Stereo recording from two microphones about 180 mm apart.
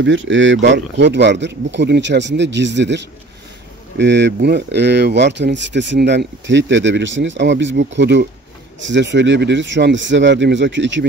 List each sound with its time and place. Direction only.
0.0 s speech: 90° right
4.0 s speech: 80° right
8.7 s speech: 90° right